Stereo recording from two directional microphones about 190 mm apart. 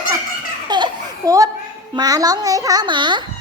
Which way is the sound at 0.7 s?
20° right (ahead or behind).